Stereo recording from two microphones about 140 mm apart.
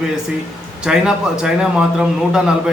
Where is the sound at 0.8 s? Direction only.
5° right (ahead or behind).